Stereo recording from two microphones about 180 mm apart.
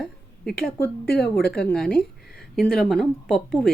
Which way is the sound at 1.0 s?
60° left (ahead or behind).